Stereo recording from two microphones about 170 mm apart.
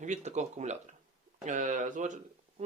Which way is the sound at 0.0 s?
45° right (ahead or behind).